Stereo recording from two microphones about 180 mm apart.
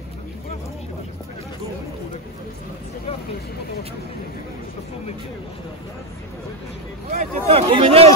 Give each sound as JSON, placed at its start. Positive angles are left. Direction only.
{"t": 7.1, "sound": "speech", "side_deg": -35}